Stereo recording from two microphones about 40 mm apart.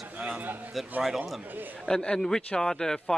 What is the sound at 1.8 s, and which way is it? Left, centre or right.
A man's voice, centre.